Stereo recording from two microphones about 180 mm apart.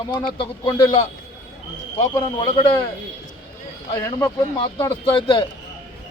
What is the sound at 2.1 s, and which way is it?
Speech, 25° left (ahead or behind).